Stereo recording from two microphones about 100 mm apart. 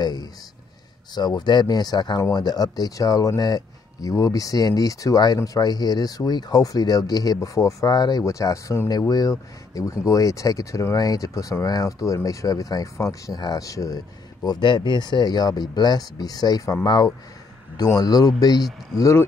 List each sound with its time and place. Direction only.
0.0 s speech: 40° left (ahead or behind)